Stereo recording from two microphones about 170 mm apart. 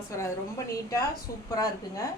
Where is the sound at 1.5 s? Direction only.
20° left (ahead or behind).